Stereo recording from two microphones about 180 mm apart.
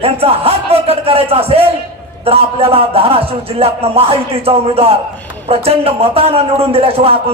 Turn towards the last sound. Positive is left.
turn(degrees=-30)  # may be behind; listen again after turning